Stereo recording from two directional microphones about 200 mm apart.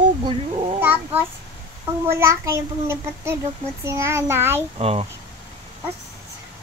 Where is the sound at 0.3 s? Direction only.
25° right (ahead or behind).